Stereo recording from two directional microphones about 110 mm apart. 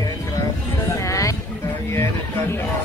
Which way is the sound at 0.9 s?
30° left (ahead or behind).